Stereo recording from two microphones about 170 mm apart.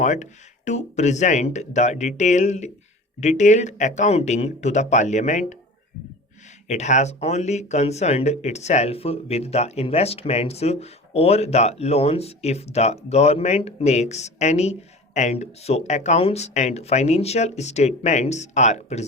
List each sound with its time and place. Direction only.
0.0 s speech: 45° left (ahead or behind)
6.7 s speech: 40° left (ahead or behind)